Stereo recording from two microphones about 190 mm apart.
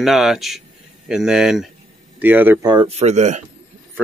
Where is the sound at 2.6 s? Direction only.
30° right (ahead or behind).